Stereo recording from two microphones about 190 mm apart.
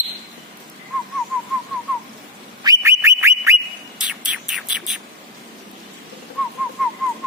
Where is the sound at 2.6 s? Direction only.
15° right (ahead or behind).